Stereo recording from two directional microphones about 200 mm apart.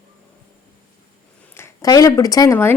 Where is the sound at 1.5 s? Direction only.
15° left (ahead or behind).